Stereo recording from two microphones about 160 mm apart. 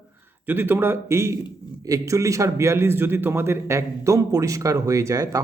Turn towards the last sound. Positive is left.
turn(degrees=-20)  # may be behind; listen again after turning